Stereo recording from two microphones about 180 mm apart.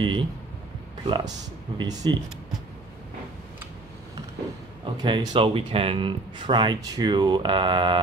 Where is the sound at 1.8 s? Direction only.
20° right (ahead or behind).